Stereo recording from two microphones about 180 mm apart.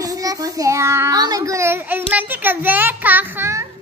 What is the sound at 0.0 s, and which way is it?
A child's voice, 20° right (ahead or behind).